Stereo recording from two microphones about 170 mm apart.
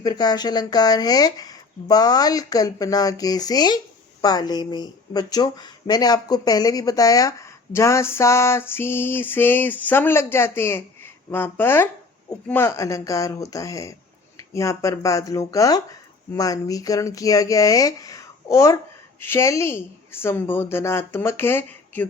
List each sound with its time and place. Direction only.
0.0 s speech: 25° left (ahead or behind)